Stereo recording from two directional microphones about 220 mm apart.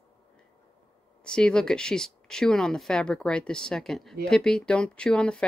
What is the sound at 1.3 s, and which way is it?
Speech, 5° left (ahead or behind).